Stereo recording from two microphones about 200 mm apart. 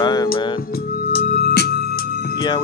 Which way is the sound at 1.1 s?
55° left (ahead or behind).